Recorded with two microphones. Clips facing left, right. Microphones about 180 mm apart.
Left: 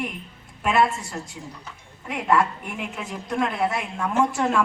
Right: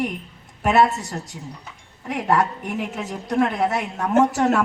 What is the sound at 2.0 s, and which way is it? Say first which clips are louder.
A woman's voice: right 1 dB; 40° right (ahead or behind).